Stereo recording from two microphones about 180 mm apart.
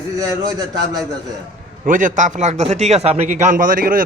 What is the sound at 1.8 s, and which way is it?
A man's voice, 45° right (ahead or behind).